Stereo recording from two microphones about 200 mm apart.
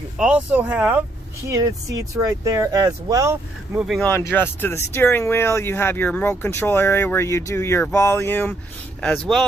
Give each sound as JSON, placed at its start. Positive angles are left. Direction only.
{"t": 0.2, "sound": "speech", "side_deg": -5}
{"t": 3.7, "sound": "speech", "side_deg": 0}
{"t": 4.0, "sound": "speech", "side_deg": 10}